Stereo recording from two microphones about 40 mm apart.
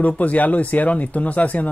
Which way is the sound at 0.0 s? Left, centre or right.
Left.